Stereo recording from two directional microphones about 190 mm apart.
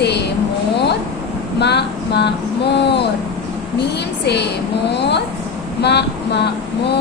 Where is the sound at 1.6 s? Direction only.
65° left (ahead or behind).